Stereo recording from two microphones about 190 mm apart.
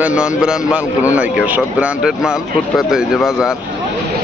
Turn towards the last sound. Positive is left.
turn(degrees=0)  # may be behind; listen again after turning